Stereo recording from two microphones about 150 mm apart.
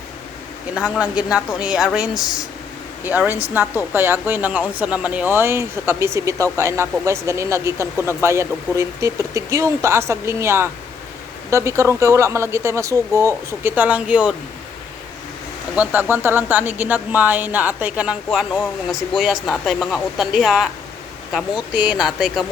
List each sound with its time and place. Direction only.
0.8 s a woman's voice: 5° right (ahead or behind)
15.7 s a woman's voice: 10° right (ahead or behind)